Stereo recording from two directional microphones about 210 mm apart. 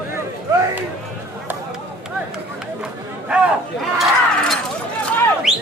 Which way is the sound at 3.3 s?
5° right (ahead or behind).